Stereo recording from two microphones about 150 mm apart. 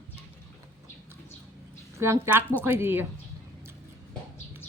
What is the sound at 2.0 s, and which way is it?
A woman's voice, 15° right (ahead or behind).